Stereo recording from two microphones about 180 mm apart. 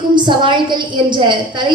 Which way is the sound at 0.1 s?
25° right (ahead or behind).